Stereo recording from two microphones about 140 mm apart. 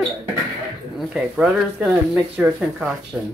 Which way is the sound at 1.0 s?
5° right (ahead or behind).